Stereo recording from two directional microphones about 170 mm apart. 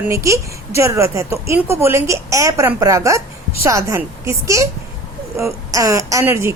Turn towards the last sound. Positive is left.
turn(degrees=-15)  # may be behind; listen again after turning